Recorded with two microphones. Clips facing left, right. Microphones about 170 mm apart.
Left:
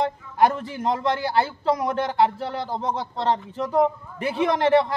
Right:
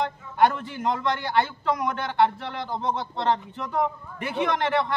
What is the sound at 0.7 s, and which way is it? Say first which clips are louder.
A man's voice: left 2 dB; 35° left (ahead or behind).